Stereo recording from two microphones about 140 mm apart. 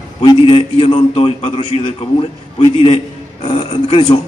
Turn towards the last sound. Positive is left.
turn(degrees=30)  # may be behind; listen again after turning